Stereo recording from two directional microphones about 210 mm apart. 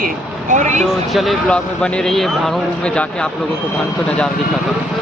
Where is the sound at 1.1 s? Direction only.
Centre (ahead or behind).